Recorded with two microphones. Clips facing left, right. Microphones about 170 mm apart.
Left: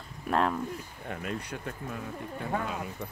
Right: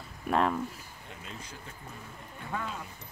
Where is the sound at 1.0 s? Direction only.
60° left (ahead or behind).